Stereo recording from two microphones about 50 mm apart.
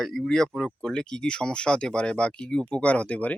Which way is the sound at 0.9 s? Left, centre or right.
Centre.